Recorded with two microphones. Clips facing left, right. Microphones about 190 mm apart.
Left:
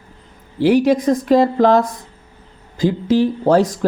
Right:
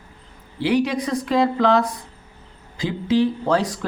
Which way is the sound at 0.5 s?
45° left (ahead or behind).